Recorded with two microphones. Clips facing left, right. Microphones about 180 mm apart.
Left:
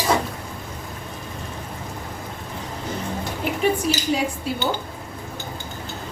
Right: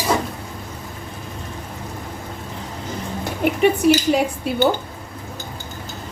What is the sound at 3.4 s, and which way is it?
Speech, 60° right (ahead or behind).